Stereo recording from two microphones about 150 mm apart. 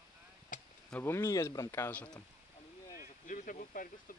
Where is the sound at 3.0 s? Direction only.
60° left (ahead or behind).